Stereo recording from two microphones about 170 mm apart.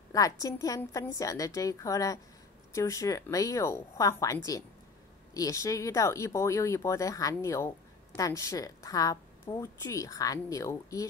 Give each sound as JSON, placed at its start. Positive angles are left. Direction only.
{"t": 0.1, "sound": "speech", "side_deg": 20}